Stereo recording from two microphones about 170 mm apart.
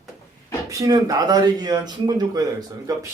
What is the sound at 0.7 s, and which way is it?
Speech, 20° right (ahead or behind).